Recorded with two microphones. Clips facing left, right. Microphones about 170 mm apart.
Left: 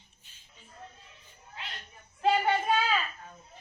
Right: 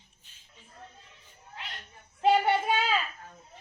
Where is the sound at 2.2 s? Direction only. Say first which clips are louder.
Right 2 dB; 20° right (ahead or behind).